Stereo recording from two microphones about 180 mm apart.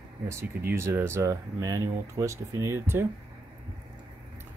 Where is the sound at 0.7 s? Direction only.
15° right (ahead or behind).